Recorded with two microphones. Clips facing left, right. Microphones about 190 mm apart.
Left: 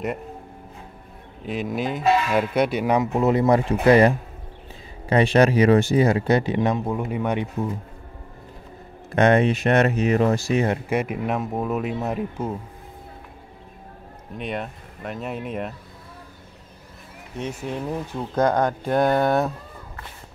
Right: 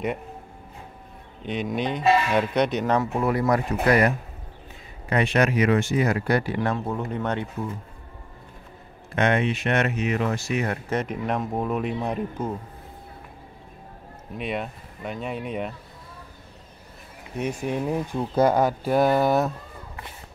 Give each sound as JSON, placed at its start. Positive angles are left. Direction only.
{"t": 1.4, "sound": "speech", "side_deg": 5}
{"t": 5.1, "sound": "speech", "side_deg": 30}
{"t": 9.1, "sound": "speech", "side_deg": 40}
{"t": 10.9, "sound": "speech", "side_deg": 10}
{"t": 14.3, "sound": "speech", "side_deg": 0}
{"t": 17.4, "sound": "speech", "side_deg": -10}